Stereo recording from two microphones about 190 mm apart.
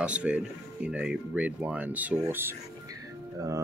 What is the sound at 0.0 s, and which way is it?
Speech, 5° right (ahead or behind).